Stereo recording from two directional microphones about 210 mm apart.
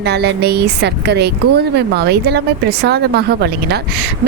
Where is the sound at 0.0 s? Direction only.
50° right (ahead or behind).